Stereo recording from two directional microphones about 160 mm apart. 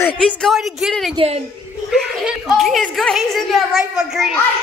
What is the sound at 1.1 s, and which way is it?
Speech, 40° right (ahead or behind).